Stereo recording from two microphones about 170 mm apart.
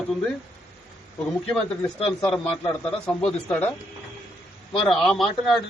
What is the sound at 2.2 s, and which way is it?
A man's voice, 5° left (ahead or behind).